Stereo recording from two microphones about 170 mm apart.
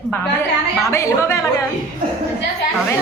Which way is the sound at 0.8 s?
15° left (ahead or behind).